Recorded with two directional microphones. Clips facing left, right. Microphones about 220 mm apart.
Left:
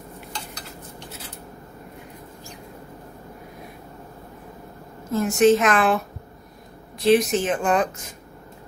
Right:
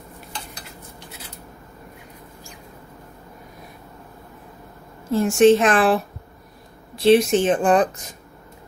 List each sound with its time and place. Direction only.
5.1 s a woman's voice: 30° right (ahead or behind)
7.0 s speech: 30° right (ahead or behind)